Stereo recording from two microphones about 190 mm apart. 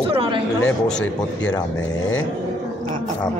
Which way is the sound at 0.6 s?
5° left (ahead or behind).